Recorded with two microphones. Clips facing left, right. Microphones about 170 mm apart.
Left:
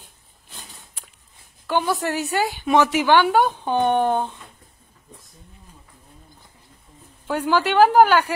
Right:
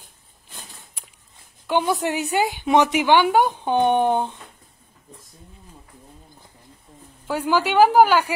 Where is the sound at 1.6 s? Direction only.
20° right (ahead or behind).